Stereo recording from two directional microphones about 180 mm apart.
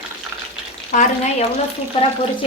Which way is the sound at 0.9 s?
45° left (ahead or behind).